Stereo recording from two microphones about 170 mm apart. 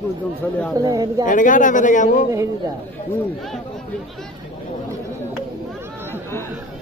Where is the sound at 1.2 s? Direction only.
50° left (ahead or behind).